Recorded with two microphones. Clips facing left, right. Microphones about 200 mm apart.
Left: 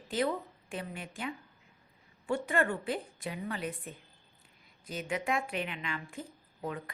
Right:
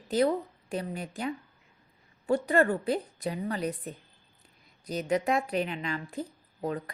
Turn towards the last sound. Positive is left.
turn(degrees=-35)  # may be behind; listen again after turning